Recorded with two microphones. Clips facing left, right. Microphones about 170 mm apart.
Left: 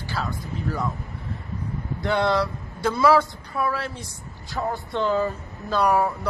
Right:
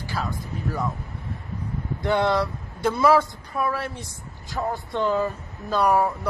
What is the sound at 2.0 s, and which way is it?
A man's voice, 15° right (ahead or behind).